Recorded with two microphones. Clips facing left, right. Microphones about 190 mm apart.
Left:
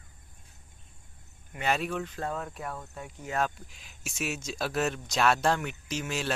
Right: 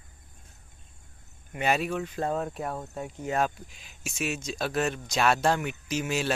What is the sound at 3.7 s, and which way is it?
Speech, centre (ahead or behind).